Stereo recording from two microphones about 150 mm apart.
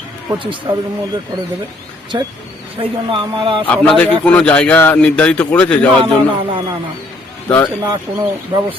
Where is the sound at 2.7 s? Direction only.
35° right (ahead or behind).